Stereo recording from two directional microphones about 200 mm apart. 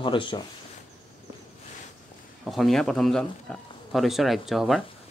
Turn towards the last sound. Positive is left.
turn(degrees=0)  # may be behind; listen again after turning